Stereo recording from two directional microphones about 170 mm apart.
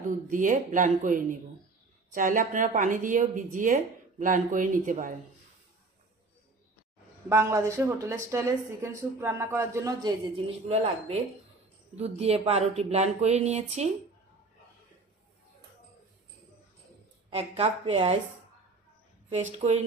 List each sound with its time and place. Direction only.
0.3 s a woman's voice: 50° right (ahead or behind)
7.3 s speech: 15° right (ahead or behind)
10.7 s speech: 35° right (ahead or behind)
17.3 s speech: 35° right (ahead or behind)
19.3 s speech: 40° right (ahead or behind)